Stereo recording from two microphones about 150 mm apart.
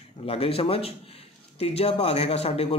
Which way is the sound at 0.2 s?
40° left (ahead or behind).